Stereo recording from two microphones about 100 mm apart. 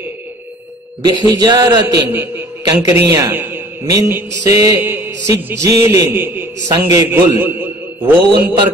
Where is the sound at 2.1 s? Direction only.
20° right (ahead or behind).